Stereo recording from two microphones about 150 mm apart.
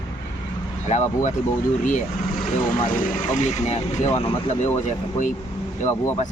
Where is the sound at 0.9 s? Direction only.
50° left (ahead or behind).